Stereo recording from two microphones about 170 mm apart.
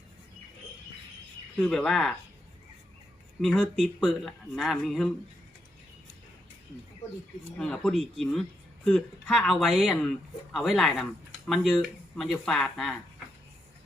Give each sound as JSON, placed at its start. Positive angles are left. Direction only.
{"t": 1.6, "sound": "speech", "side_deg": 0}
{"t": 3.4, "sound": "speech", "side_deg": 0}
{"t": 7.6, "sound": "speech", "side_deg": 5}